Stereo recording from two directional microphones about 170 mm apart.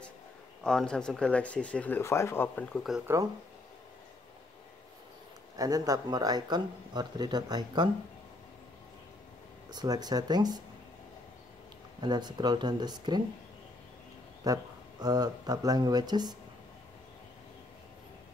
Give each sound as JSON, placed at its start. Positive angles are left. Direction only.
{"t": 0.7, "sound": "speech", "side_deg": 5}
{"t": 5.6, "sound": "speech", "side_deg": -20}
{"t": 9.7, "sound": "speech", "side_deg": -25}
{"t": 12.0, "sound": "speech", "side_deg": -25}
{"t": 14.4, "sound": "speech", "side_deg": -20}